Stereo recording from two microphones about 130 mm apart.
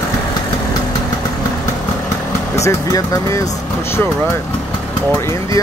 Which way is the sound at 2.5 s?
25° left (ahead or behind).